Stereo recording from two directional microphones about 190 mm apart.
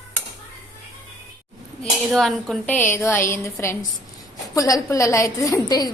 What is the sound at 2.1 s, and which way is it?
A woman's voice, centre (ahead or behind).